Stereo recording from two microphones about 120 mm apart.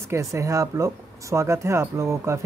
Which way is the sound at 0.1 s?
25° right (ahead or behind).